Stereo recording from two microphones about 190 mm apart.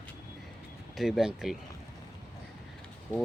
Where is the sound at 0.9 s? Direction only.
Centre (ahead or behind).